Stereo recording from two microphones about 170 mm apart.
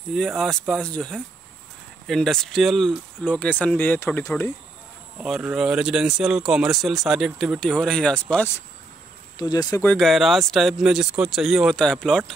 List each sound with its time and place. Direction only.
0.1 s speech: centre (ahead or behind)
5.2 s speech: centre (ahead or behind)
9.4 s speech: 25° left (ahead or behind)
9.8 s speech: centre (ahead or behind)